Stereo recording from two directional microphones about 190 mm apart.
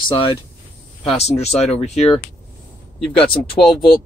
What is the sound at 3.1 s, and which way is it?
Speech, centre (ahead or behind).